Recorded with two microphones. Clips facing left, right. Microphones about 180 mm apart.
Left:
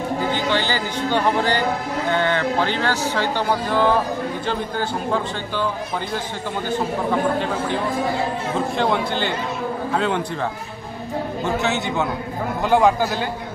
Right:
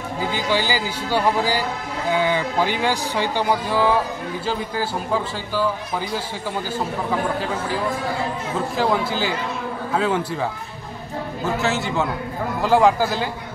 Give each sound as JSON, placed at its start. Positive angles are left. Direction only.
{"t": 0.3, "sound": "a man's voice", "side_deg": -10}
{"t": 7.3, "sound": "a man's voice", "side_deg": -5}
{"t": 11.4, "sound": "a man's voice", "side_deg": 0}